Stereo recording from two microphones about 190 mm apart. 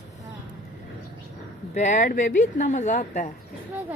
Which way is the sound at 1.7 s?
40° left (ahead or behind).